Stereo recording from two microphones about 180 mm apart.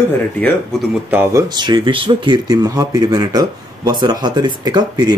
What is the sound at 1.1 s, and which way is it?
Speech, 15° right (ahead or behind).